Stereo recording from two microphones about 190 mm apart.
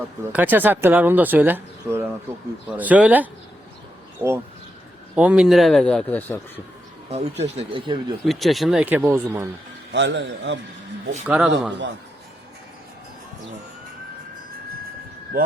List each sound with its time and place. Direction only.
0.3 s speech: 10° right (ahead or behind); by 6.4 s 10° left (ahead or behind)
7.1 s speech: 35° right (ahead or behind)
8.2 s speech: centre (ahead or behind)
9.9 s a man's voice: 70° right (ahead or behind)
11.3 s speech: 5° right (ahead or behind)